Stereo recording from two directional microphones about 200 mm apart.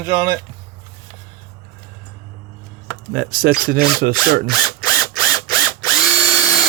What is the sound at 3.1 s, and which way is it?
Speech, 45° right (ahead or behind).